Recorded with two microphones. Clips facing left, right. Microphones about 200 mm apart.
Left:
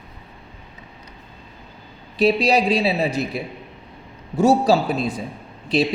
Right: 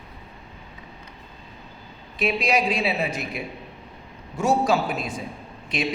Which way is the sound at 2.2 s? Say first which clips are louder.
Left 6 dB; 35° left (ahead or behind).